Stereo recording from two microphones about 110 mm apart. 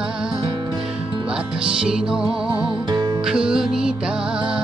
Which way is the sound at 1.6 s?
10° right (ahead or behind).